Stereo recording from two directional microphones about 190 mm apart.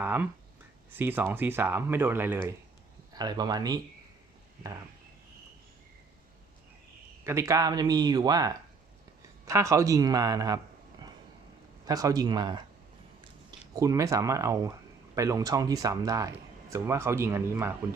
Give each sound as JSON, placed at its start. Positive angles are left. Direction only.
{"t": 0.0, "sound": "speech", "side_deg": -10}
{"t": 3.1, "sound": "speech", "side_deg": -20}
{"t": 7.3, "sound": "speech", "side_deg": -15}
{"t": 11.9, "sound": "speech", "side_deg": -20}
{"t": 13.7, "sound": "speech", "side_deg": -15}